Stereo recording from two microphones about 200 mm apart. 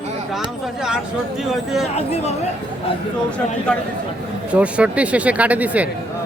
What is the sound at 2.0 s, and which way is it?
Speech, 30° left (ahead or behind).